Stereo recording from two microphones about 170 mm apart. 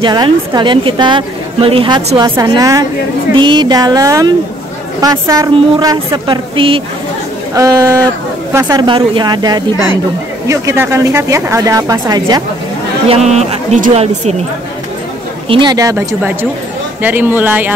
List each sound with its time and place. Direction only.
0.0 s a woman's voice: 25° right (ahead or behind)
7.5 s a woman's voice: 20° right (ahead or behind)
13.1 s speech: 40° right (ahead or behind)
15.4 s a woman's voice: 30° right (ahead or behind); by 17.7 s 10° right (ahead or behind)